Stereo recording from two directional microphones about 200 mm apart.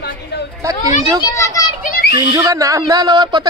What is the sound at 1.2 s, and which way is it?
Speech, 15° left (ahead or behind).